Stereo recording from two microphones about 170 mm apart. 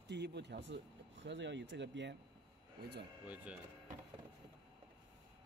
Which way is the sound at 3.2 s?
10° right (ahead or behind).